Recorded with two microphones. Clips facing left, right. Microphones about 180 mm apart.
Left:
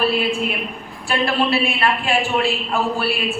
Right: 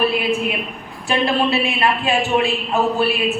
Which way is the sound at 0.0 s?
20° right (ahead or behind).